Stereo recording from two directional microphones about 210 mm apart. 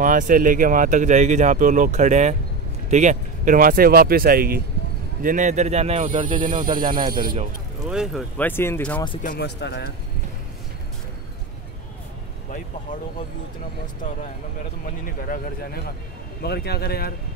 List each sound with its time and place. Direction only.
0.0 s speech: 40° right (ahead or behind)
6.7 s speech: 25° right (ahead or behind)
7.9 s speech: centre (ahead or behind)
9.2 s speech: 45° left (ahead or behind)
15.0 s speech: 40° left (ahead or behind)